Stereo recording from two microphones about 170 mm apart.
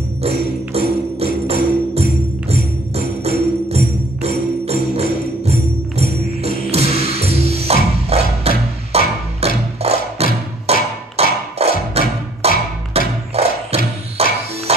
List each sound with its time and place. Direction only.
0.2 s music: 35° right (ahead or behind)
3.3 s music: 40° right (ahead or behind)